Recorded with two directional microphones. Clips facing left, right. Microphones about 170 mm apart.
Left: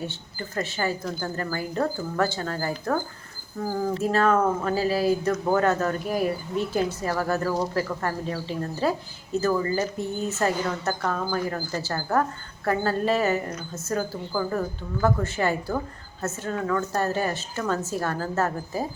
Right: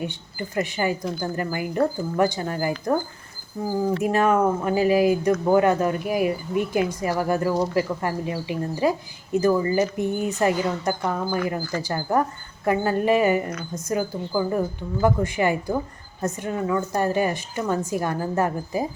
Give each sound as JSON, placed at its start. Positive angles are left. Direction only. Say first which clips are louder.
{"t": 0.0, "sound": "speech", "louder": "right 3 dB", "side_deg": -15}
{"t": 4.0, "sound": "speech", "louder": "right 1 dB", "side_deg": -15}